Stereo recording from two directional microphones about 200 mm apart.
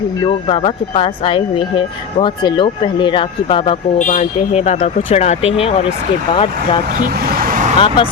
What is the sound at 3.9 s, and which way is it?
Speech, 40° left (ahead or behind).